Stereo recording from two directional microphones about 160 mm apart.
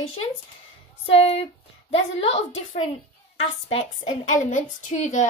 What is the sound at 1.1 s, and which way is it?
A woman's voice, 35° left (ahead or behind).